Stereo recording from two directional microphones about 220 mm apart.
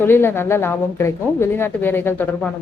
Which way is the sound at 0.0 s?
10° left (ahead or behind).